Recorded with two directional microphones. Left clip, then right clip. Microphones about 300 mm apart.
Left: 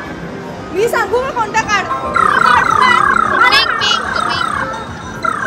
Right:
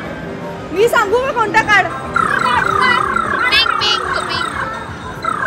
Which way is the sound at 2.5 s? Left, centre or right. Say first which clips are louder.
Left 3 dB; centre.